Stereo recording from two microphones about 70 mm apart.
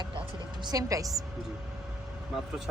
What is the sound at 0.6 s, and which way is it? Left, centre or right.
Speech, right.